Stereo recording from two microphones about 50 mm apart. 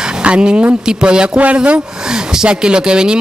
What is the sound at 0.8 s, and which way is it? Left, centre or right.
Speech, centre.